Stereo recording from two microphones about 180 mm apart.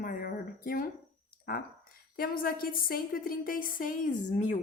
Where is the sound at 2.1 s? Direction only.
55° left (ahead or behind).